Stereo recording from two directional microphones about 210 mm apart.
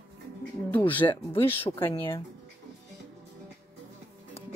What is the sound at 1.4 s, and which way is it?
Speech, 10° left (ahead or behind).